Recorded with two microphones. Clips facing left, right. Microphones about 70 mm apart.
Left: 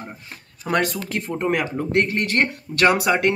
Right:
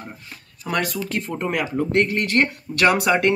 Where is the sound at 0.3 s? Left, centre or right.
Left.